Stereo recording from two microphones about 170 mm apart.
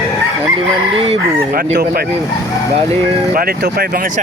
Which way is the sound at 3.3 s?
60° right (ahead or behind).